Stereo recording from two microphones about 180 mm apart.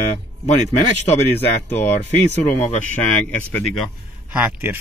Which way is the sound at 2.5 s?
40° left (ahead or behind).